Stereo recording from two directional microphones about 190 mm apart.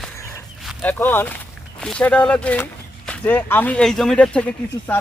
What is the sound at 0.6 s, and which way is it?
Speech, centre (ahead or behind).